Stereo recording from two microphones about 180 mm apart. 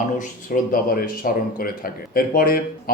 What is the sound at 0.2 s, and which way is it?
Speech, 50° left (ahead or behind).